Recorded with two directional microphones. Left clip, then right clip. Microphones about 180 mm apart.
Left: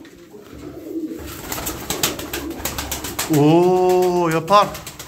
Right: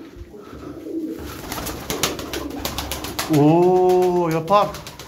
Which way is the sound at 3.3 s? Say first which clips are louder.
Left 1 dB; 5° right (ahead or behind).